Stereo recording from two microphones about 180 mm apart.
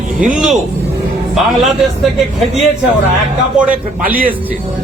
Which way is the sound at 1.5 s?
Centre (ahead or behind).